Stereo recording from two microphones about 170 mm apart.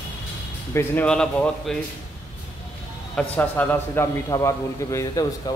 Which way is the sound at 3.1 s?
10° left (ahead or behind).